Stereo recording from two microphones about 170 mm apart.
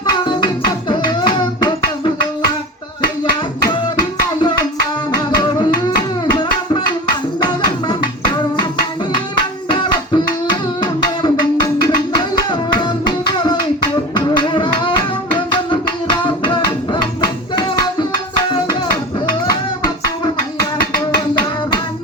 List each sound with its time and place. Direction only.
0.0 s music: 25° left (ahead or behind)
10.8 s music: 25° left (ahead or behind)
12.5 s music: 25° left (ahead or behind)
16.2 s music: 30° left (ahead or behind)